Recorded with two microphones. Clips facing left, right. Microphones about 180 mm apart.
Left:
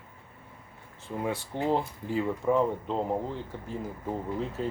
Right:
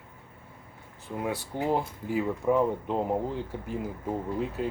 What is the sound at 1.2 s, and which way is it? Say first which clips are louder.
Speech: even; 10° right (ahead or behind).